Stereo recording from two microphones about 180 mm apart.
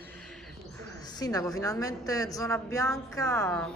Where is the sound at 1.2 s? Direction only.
20° left (ahead or behind).